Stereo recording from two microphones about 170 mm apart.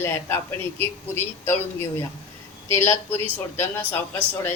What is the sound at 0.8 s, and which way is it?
Speech, 15° left (ahead or behind).